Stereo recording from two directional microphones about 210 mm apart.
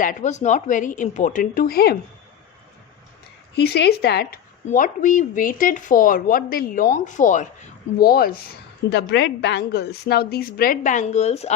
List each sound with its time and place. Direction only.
0.0 s speech: 35° left (ahead or behind)
3.5 s a woman's voice: 50° left (ahead or behind); by 11.5 s 30° left (ahead or behind)